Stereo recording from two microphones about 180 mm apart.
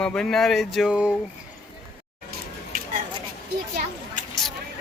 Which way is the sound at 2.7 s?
50° right (ahead or behind).